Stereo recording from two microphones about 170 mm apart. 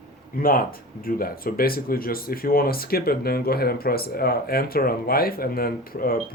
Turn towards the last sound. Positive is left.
turn(degrees=60)  # may be behind; listen again after turning